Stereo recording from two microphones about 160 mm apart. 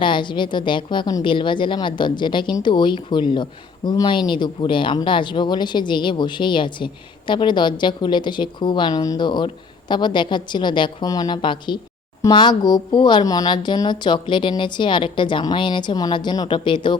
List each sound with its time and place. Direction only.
0.0 s a woman's voice: 30° left (ahead or behind)